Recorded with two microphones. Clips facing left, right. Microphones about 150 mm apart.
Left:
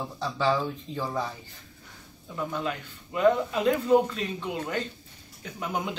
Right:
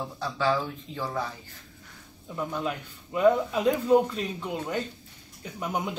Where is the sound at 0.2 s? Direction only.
15° left (ahead or behind).